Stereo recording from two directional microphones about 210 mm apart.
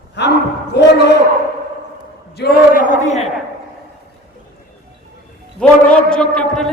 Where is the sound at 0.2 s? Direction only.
55° left (ahead or behind).